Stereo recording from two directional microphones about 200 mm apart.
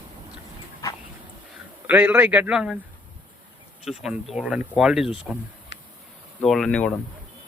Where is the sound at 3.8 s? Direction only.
Centre (ahead or behind).